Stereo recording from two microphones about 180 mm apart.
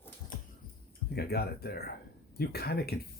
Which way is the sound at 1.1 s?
60° left (ahead or behind).